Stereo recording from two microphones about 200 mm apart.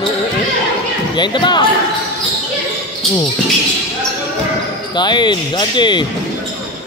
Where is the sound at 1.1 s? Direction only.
20° left (ahead or behind).